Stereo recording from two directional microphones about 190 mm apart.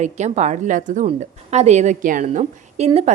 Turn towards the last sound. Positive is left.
turn(degrees=-30)  # may be behind; listen again after turning